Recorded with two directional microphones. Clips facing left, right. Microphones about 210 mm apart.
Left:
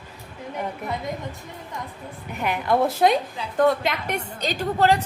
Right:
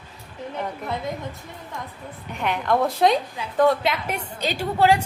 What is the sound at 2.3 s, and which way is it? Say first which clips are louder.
A woman's voice: even; 5° left (ahead or behind).